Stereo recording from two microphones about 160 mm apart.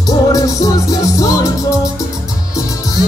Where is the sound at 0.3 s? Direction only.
20° left (ahead or behind).